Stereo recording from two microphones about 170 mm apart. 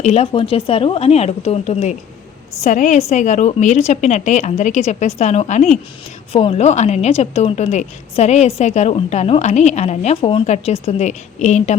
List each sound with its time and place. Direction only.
0.0 s a woman's voice: 40° left (ahead or behind)